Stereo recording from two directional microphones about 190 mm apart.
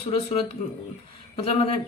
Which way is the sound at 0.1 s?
30° left (ahead or behind).